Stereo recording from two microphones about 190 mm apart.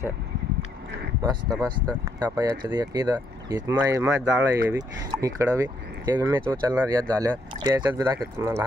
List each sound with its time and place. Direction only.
1.5 s speech: centre (ahead or behind)
2.1 s speech: 20° right (ahead or behind)